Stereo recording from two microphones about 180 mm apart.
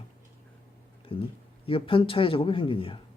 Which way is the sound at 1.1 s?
30° left (ahead or behind).